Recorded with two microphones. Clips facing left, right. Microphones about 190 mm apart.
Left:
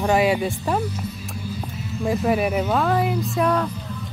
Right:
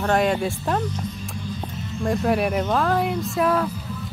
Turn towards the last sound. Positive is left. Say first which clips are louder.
# even
turn(degrees=0)  # may be behind; listen again after turning